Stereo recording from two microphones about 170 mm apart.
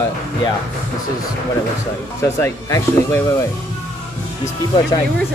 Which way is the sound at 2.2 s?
15° left (ahead or behind).